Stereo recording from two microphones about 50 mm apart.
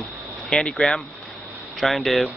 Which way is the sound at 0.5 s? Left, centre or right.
Centre.